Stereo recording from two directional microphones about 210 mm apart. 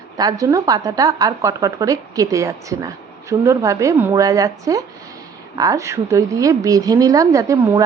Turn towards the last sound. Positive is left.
turn(degrees=-15)  # may be behind; listen again after turning